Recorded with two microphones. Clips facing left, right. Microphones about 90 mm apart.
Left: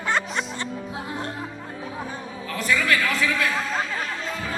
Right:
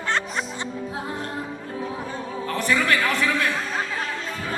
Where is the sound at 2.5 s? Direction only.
40° right (ahead or behind).